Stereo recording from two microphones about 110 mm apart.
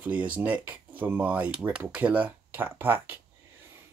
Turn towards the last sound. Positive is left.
turn(degrees=-20)  # may be behind; listen again after turning